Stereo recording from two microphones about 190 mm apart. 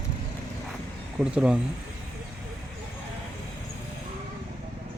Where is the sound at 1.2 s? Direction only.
5° right (ahead or behind).